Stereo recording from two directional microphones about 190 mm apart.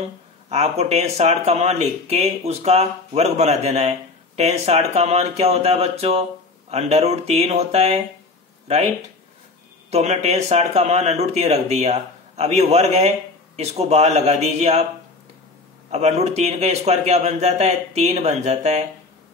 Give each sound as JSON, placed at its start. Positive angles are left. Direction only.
{"t": 0.5, "sound": "speech", "side_deg": -35}
{"t": 15.9, "sound": "speech", "side_deg": -35}